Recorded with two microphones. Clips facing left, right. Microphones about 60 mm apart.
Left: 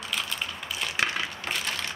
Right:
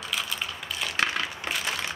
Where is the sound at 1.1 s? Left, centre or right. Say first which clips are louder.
Right 1 dB; centre.